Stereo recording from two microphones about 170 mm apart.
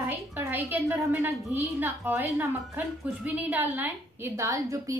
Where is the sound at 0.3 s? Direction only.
10° right (ahead or behind).